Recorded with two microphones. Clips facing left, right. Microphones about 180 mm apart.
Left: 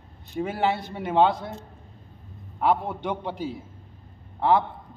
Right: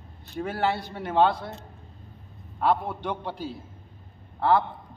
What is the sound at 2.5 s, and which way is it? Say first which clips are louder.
A man's voice: left 1 dB; 15° left (ahead or behind).